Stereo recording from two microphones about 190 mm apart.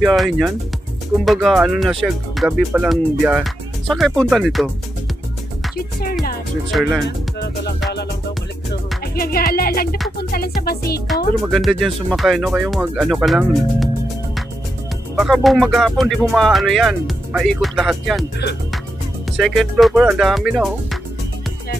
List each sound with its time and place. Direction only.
0.0 s speech: centre (ahead or behind)
6.7 s speech: centre (ahead or behind)
9.0 s music: 50° left (ahead or behind)
11.4 s speech: centre (ahead or behind)
15.1 s speech: centre (ahead or behind)
19.3 s speech: centre (ahead or behind)